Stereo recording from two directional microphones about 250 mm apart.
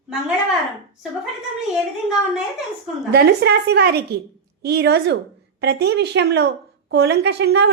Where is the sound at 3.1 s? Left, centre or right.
Right.